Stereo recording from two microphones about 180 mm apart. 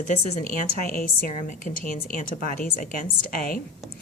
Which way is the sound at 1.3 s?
40° left (ahead or behind).